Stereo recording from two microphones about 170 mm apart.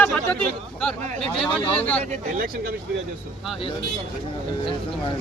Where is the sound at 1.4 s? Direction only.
35° left (ahead or behind).